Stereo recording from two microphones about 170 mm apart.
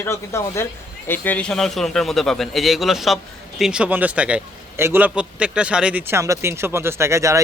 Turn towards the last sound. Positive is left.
turn(degrees=-15)  # may be behind; listen again after turning